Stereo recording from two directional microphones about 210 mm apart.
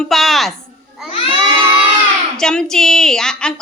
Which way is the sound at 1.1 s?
25° left (ahead or behind).